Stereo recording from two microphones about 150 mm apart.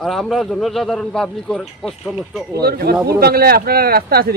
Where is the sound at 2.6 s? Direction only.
90° right.